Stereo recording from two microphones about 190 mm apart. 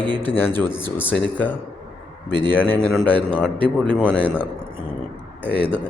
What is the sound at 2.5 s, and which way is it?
A man's voice, 10° left (ahead or behind).